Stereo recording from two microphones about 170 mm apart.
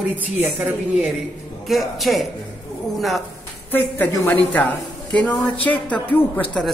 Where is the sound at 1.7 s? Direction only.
Centre (ahead or behind).